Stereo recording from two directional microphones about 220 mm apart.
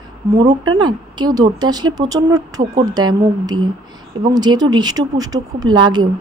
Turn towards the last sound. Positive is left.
turn(degrees=-20)  # may be behind; listen again after turning